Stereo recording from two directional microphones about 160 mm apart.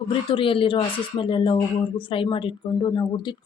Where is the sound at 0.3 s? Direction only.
35° left (ahead or behind).